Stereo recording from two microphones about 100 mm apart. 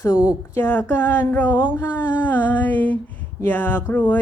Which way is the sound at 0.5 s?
20° left (ahead or behind).